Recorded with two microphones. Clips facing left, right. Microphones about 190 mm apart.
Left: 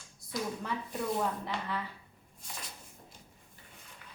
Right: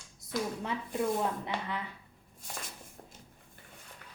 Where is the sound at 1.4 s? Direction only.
20° right (ahead or behind).